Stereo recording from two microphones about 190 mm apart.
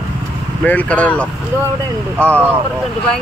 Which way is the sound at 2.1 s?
10° right (ahead or behind).